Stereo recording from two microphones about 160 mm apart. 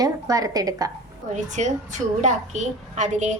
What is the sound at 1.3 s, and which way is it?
A woman's voice, 45° right (ahead or behind).